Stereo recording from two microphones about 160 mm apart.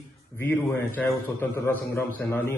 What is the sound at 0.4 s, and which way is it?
A man's voice, 10° left (ahead or behind).